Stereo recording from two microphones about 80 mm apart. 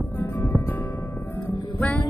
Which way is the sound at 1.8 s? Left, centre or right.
Centre.